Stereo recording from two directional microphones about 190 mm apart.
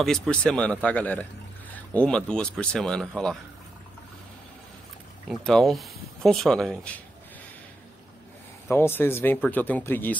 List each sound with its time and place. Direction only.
0.0 s speech: 5° left (ahead or behind)
5.3 s speech: centre (ahead or behind)
8.6 s speech: 10° left (ahead or behind)